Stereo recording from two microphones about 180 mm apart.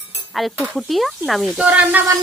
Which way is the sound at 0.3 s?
Centre (ahead or behind).